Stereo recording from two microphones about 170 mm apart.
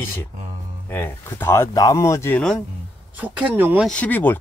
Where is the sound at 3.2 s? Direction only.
10° right (ahead or behind).